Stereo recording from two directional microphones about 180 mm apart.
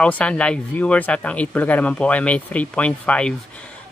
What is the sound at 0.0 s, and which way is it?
Speech, 5° left (ahead or behind).